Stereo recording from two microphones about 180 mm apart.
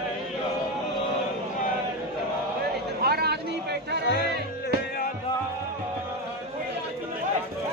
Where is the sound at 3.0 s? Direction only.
60° right (ahead or behind).